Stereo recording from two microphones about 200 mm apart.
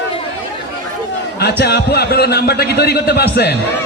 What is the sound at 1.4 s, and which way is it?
A man's voice, 55° left (ahead or behind).